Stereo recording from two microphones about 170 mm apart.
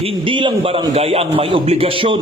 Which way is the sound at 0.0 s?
30° right (ahead or behind).